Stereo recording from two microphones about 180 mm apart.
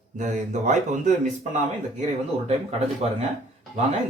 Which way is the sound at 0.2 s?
45° right (ahead or behind).